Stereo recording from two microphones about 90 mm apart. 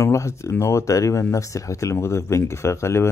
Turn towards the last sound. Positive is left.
turn(degrees=30)  # may be behind; listen again after turning